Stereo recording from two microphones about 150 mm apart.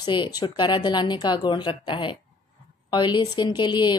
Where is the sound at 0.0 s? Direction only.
30° left (ahead or behind).